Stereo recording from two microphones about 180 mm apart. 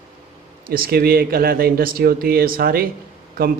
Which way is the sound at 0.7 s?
55° right (ahead or behind).